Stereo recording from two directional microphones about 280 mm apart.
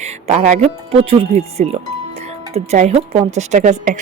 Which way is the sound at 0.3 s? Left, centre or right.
Right.